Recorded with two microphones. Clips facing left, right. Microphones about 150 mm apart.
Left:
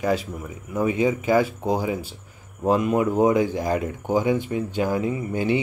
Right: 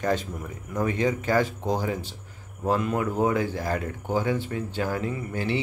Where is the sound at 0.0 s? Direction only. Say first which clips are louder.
Left 3 dB; 5° left (ahead or behind).